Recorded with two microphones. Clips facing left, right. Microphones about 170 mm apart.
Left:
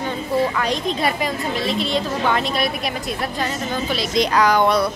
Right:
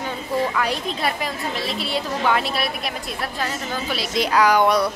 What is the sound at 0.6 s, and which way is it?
A woman's voice, 5° right (ahead or behind).